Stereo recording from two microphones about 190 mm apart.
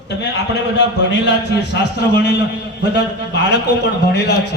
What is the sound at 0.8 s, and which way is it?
A man's voice, 65° left (ahead or behind).